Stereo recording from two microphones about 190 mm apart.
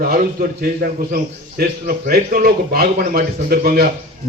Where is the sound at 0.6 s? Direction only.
50° right (ahead or behind).